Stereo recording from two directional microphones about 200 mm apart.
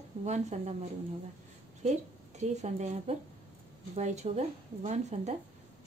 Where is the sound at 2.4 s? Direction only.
35° right (ahead or behind).